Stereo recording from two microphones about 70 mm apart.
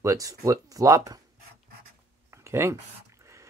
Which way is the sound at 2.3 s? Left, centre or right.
Right.